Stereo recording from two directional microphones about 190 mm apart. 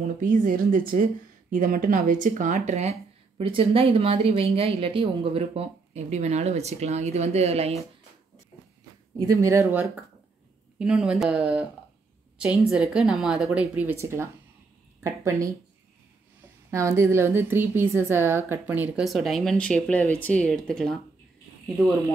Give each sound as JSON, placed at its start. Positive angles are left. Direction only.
{"t": 0.2, "sound": "speech", "side_deg": -45}
{"t": 9.2, "sound": "a woman's voice", "side_deg": -15}
{"t": 16.7, "sound": "a woman's voice", "side_deg": -15}